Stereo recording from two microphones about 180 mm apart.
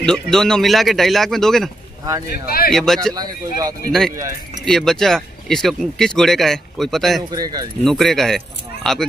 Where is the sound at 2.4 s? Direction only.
55° left (ahead or behind).